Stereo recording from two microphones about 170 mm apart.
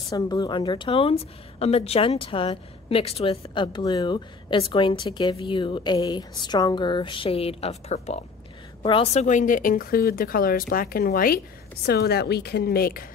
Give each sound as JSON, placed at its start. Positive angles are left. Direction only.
{"t": 0.1, "sound": "a woman's voice", "side_deg": 25}